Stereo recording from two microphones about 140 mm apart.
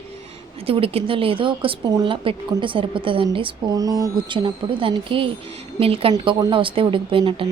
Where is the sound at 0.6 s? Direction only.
40° right (ahead or behind).